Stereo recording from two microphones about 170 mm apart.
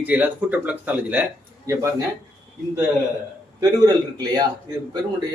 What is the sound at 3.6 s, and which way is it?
Speech, 25° right (ahead or behind).